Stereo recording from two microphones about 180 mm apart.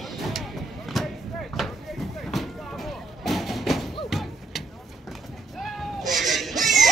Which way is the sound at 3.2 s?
Centre (ahead or behind).